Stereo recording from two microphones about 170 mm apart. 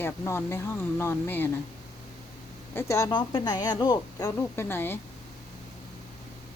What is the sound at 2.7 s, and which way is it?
Speech, 20° left (ahead or behind).